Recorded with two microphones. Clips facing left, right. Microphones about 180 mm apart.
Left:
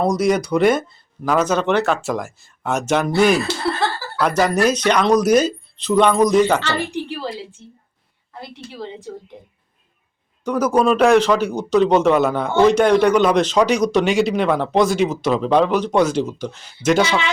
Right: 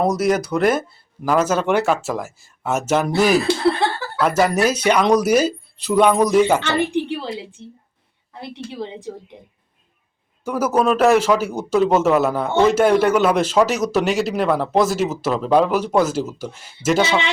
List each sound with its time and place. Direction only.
0.0 s speech: 5° right (ahead or behind)
7.1 s a sound: 25° right (ahead or behind)
8.4 s a woman's voice: 25° right (ahead or behind)
10.4 s speech: 5° right (ahead or behind)